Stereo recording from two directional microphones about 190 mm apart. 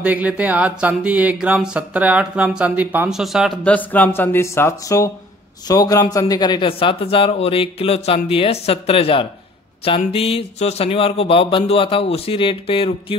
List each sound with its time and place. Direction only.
0.0 s a man's voice: 5° right (ahead or behind); by 12.9 s 30° left (ahead or behind)